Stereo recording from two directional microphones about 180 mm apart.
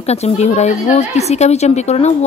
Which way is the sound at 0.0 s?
35° left (ahead or behind).